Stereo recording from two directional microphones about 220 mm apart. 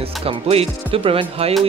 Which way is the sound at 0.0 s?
25° right (ahead or behind).